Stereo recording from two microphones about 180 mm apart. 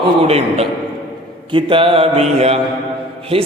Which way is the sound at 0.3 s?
35° right (ahead or behind).